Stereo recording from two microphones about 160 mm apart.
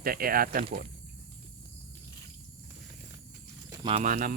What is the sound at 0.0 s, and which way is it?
Speech, 65° right (ahead or behind).